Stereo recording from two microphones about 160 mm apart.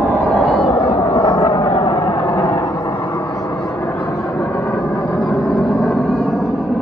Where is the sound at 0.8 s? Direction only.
20° left (ahead or behind).